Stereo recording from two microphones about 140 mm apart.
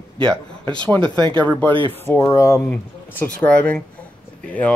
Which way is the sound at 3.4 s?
10° left (ahead or behind).